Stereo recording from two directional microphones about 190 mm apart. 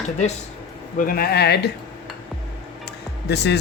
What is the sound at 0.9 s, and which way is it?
Speech, 50° left (ahead or behind).